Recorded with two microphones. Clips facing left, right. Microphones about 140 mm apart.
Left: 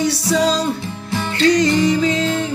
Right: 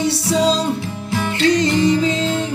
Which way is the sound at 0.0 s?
25° right (ahead or behind).